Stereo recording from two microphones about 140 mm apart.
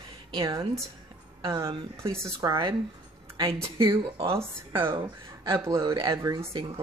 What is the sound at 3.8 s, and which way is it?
Speech, 20° right (ahead or behind).